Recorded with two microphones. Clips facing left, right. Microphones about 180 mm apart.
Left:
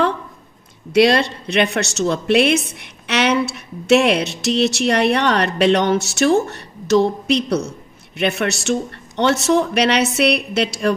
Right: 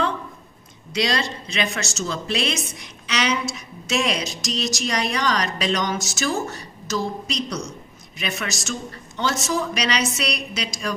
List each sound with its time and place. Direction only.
0.9 s a woman's voice: 60° left (ahead or behind)